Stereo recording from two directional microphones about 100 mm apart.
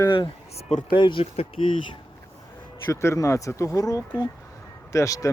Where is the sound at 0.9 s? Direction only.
50° left (ahead or behind).